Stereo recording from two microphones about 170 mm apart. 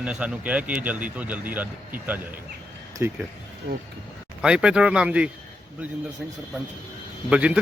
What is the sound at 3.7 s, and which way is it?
Speech, 70° right (ahead or behind).